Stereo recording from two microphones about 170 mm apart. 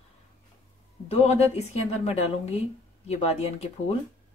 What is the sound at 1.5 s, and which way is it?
A woman's voice, 40° left (ahead or behind).